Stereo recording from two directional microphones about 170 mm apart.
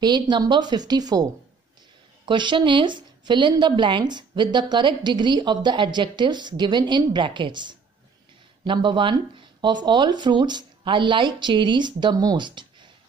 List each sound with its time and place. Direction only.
0.0 s a woman's voice: 25° right (ahead or behind)